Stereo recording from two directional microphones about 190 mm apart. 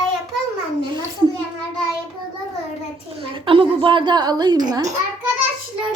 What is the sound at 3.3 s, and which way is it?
A woman's voice, 25° right (ahead or behind).